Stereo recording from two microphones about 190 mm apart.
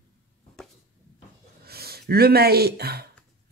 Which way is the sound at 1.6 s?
55° right (ahead or behind).